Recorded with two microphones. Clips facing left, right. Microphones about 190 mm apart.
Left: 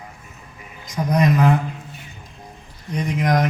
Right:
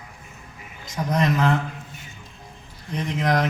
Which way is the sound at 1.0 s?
15° left (ahead or behind).